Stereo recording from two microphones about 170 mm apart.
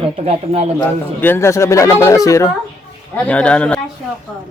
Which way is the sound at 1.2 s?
15° left (ahead or behind).